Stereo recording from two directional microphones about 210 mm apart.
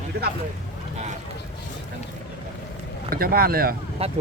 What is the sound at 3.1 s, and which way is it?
Speech, 45° right (ahead or behind).